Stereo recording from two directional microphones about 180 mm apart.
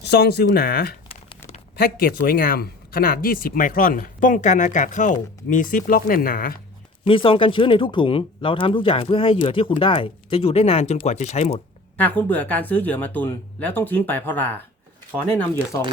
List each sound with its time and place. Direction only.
0.0 s speech: 65° left (ahead or behind)
7.0 s speech: 30° left (ahead or behind)
11.9 s speech: 10° left (ahead or behind)